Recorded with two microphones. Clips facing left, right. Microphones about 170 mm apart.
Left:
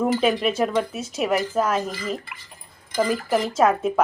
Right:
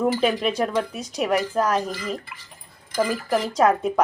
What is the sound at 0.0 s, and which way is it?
A woman's voice, centre (ahead or behind).